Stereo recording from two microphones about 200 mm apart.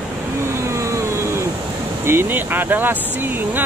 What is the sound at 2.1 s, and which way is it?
Speech, 10° right (ahead or behind).